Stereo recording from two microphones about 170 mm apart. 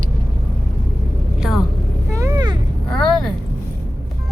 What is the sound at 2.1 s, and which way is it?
Vehicle, 20° right (ahead or behind).